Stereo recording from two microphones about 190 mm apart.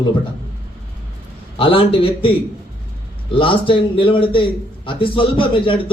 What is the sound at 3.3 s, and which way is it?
A man's voice, 25° left (ahead or behind).